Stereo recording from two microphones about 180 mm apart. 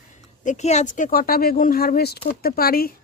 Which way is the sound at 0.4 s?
40° left (ahead or behind).